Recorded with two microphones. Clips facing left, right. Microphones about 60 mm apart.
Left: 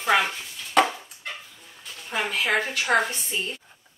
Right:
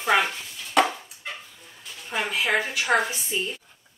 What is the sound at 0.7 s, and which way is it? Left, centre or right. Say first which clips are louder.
Chopping: left 1 dB; centre.